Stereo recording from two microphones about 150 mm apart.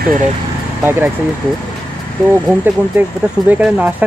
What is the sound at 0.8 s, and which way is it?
Speech, 15° right (ahead or behind).